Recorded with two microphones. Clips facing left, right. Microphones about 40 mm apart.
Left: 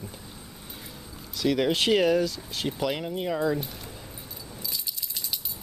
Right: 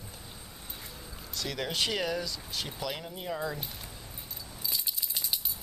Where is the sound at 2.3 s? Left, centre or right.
Centre.